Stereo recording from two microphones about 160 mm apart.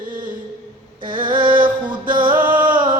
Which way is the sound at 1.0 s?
30° right (ahead or behind).